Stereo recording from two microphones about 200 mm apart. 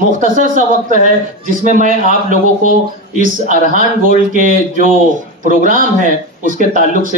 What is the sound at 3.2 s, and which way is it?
Speech, 40° right (ahead or behind).